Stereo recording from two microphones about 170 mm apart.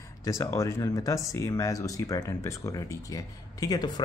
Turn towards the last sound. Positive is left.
turn(degrees=25)  # may be behind; listen again after turning